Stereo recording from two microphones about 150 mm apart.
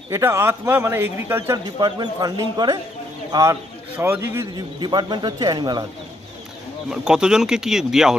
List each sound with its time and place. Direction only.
0.1 s speech: 20° right (ahead or behind)
1.8 s speech: 30° right (ahead or behind)
3.9 s speech: 15° right (ahead or behind)
4.6 s speech: 30° right (ahead or behind)
6.9 s speech: 5° right (ahead or behind)